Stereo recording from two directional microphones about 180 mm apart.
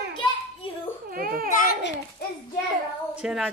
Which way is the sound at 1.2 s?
50° right (ahead or behind).